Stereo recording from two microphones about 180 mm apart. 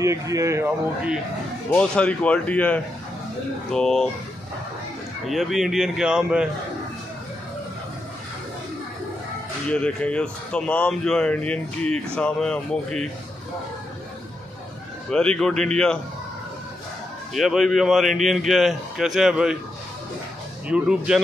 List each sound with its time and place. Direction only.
0.0 s speech: 15° right (ahead or behind)
1.7 s a man's voice: 5° left (ahead or behind)
5.2 s speech: centre (ahead or behind)
9.7 s speech: 5° left (ahead or behind)
15.0 s speech: 5° left (ahead or behind)
17.3 s speech: centre (ahead or behind)
20.6 s speech: 5° right (ahead or behind)